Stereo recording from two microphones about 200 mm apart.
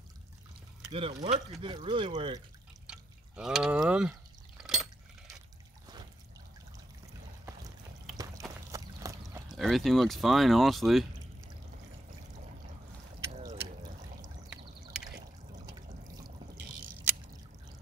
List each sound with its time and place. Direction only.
0.8 s speech: 25° right (ahead or behind)
2.9 s drip: 5° right (ahead or behind)
4.6 s liquid: 5° right (ahead or behind)
8.2 s a sound: 15° right (ahead or behind)
9.5 s speech: centre (ahead or behind)
13.5 s trickle: 30° right (ahead or behind)
17.1 s drip: 10° right (ahead or behind)